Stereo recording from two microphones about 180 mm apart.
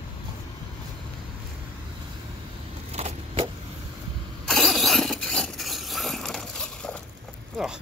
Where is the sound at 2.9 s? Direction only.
35° right (ahead or behind).